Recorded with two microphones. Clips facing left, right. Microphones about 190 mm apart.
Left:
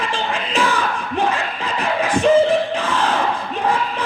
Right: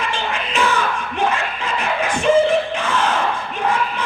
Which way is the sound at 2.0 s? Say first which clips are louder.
Left 3 dB; 35° left (ahead or behind).